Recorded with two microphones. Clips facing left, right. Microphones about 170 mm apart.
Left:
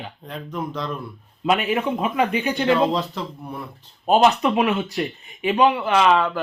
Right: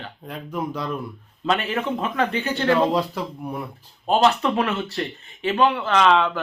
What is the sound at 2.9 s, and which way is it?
Speech, 10° right (ahead or behind).